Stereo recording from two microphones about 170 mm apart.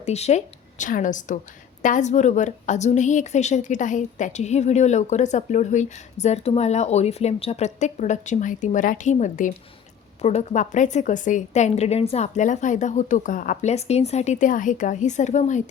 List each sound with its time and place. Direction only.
0.0 s a woman's voice: 40° left (ahead or behind)